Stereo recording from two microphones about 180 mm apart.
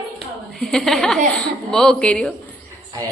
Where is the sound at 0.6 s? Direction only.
Centre (ahead or behind).